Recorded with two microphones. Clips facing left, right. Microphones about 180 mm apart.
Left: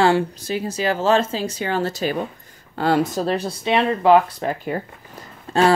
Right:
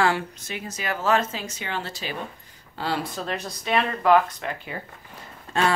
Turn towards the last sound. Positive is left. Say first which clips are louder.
# left 7 dB
turn(degrees=35)  # may be behind; listen again after turning